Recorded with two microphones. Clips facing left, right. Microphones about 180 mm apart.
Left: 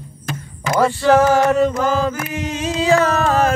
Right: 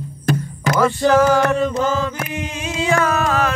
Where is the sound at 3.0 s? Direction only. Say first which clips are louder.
Left 2 dB; 45° left (ahead or behind).